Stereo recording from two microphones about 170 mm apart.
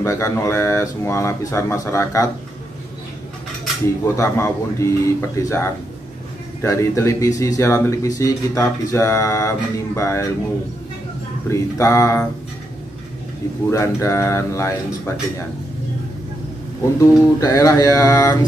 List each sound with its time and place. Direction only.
0.0 s speech: 20° left (ahead or behind)
4.0 s speech: 15° left (ahead or behind)
11.5 s speech: 15° left (ahead or behind)
13.7 s speech: 15° left (ahead or behind)
17.0 s music: 20° left (ahead or behind)